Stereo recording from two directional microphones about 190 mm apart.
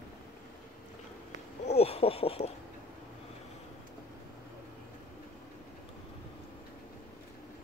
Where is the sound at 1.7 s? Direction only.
35° left (ahead or behind).